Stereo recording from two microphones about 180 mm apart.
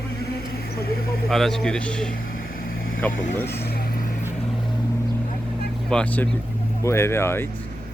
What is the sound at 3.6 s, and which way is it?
Vehicle, 60° left (ahead or behind).